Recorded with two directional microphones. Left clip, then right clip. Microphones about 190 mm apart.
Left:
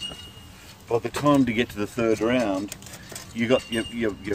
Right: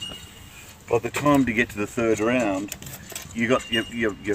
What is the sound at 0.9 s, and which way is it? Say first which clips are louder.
Speech: right 1 dB; 10° left (ahead or behind).